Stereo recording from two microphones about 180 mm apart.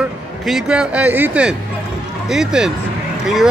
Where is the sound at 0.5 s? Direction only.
5° right (ahead or behind).